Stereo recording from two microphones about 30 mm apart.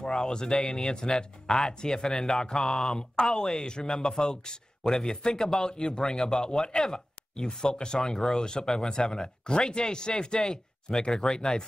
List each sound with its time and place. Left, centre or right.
0.0 s speech: left
2.9 s speech: left